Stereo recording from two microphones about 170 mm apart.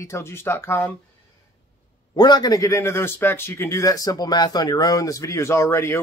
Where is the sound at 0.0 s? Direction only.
15° left (ahead or behind).